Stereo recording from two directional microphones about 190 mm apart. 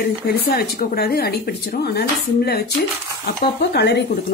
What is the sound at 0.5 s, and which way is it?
Speech, 55° left (ahead or behind).